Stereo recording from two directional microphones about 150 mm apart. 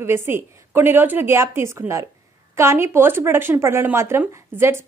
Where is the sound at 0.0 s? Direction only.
15° right (ahead or behind).